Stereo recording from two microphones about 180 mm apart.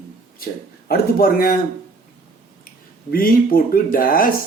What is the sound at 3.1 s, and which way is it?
Speech, 55° left (ahead or behind).